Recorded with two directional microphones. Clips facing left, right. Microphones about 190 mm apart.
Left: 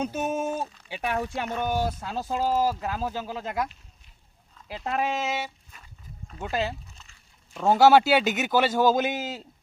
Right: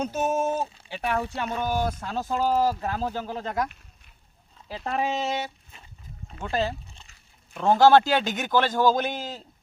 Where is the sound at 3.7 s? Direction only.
60° right (ahead or behind).